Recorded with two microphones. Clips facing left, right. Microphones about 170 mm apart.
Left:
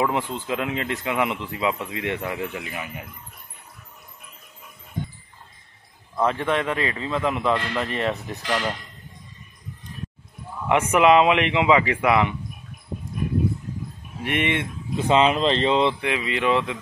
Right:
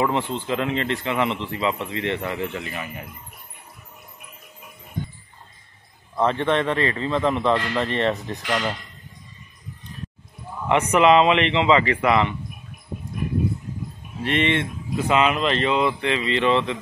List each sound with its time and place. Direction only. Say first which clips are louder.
0.0 s speech: right 1 dB; 5° left (ahead or behind)
6.1 s a man's voice: right 2 dB; 5° left (ahead or behind)
10.7 s speech: even; 5° left (ahead or behind)
14.2 s speech: right 2 dB; 10° left (ahead or behind)
15.0 s speech: left 2 dB; 30° left (ahead or behind)
16.0 s speech: right 3 dB; 10° left (ahead or behind)